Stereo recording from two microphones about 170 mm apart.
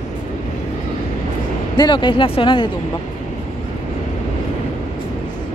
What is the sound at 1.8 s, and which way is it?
Speech, 25° left (ahead or behind).